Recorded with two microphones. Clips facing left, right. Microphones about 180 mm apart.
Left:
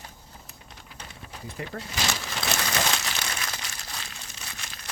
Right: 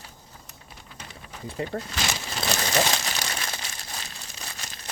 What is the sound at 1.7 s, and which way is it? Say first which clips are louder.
Speech: right 5 dB; 30° right (ahead or behind).